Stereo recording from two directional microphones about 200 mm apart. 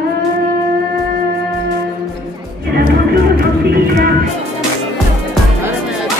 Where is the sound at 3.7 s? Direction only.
50° right (ahead or behind).